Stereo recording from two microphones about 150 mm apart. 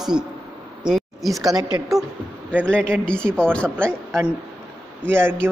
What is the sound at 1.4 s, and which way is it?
Speech, 25° right (ahead or behind).